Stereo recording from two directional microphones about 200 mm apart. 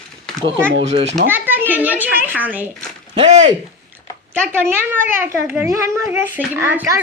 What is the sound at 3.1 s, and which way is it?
Speech, 35° right (ahead or behind).